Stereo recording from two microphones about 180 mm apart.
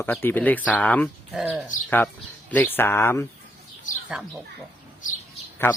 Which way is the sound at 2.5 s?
10° left (ahead or behind).